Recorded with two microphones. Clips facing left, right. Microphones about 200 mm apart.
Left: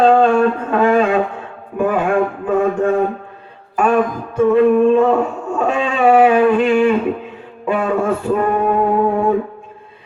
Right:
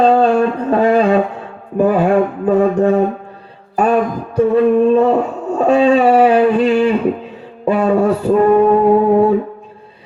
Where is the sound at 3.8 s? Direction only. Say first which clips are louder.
Right 1 dB; 35° right (ahead or behind).